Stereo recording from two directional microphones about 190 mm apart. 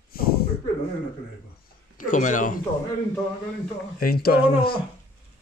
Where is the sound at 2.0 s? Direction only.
40° left (ahead or behind).